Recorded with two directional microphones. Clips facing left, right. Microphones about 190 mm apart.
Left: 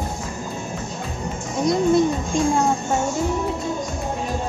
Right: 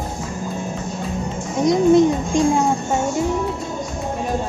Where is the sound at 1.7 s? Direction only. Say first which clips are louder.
Right 4 dB; 15° right (ahead or behind).